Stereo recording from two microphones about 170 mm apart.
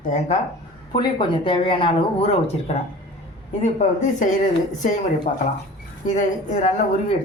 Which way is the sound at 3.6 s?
45° left (ahead or behind).